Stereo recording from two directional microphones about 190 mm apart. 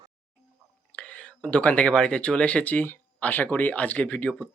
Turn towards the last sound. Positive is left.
turn(degrees=5)  # may be behind; listen again after turning